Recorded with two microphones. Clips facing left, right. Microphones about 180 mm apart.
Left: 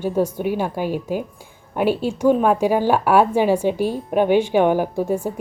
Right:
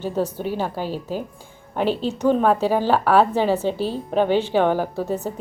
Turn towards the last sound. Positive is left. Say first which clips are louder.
# left 3 dB
turn(degrees=10)  # may be behind; listen again after turning